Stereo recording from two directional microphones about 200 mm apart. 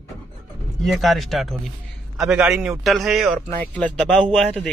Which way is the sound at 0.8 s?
Centre (ahead or behind).